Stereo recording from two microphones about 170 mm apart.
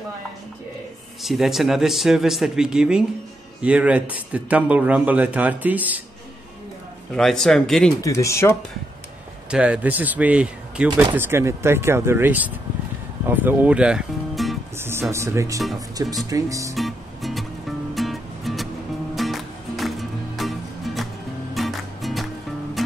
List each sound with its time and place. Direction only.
1.2 s speech: centre (ahead or behind)
7.2 s speech: 5° left (ahead or behind)
8.0 s speech: 20° left (ahead or behind)
9.5 s speech: 5° right (ahead or behind)
14.8 s speech: 15° right (ahead or behind)
16.7 s music: centre (ahead or behind)